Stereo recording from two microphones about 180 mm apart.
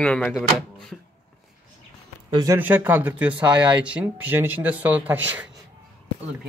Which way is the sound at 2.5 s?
10° right (ahead or behind).